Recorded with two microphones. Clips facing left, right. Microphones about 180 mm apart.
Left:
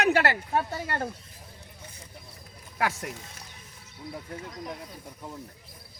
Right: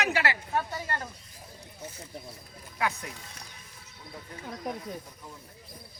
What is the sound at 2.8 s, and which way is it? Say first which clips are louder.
Speech: left 2 dB; 90° left.